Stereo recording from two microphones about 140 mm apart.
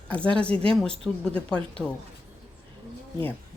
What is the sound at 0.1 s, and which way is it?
Speech, 10° left (ahead or behind).